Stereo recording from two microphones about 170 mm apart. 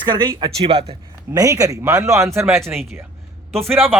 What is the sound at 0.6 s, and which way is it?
Speech, 35° right (ahead or behind).